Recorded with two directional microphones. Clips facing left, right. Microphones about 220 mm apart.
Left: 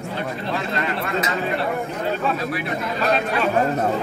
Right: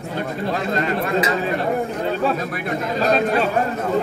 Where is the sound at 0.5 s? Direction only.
40° right (ahead or behind).